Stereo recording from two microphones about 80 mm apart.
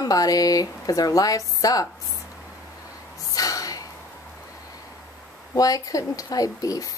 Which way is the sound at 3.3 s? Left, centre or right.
Left.